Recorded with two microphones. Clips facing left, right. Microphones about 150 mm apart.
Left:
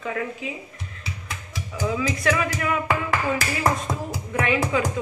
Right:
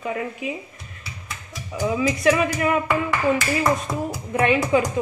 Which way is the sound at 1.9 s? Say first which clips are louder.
Right 4 dB; 20° right (ahead or behind).